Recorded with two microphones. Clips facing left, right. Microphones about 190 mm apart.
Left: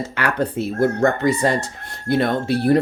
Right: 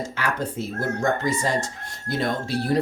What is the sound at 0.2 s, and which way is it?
Speech, 65° left (ahead or behind).